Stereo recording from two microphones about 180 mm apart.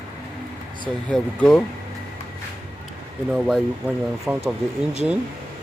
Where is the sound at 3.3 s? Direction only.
Centre (ahead or behind).